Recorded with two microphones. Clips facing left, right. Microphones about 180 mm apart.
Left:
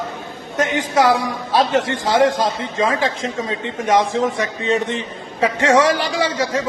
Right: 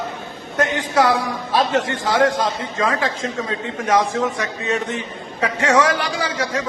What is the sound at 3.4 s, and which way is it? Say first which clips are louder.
A man's voice: left 2 dB; 25° left (ahead or behind).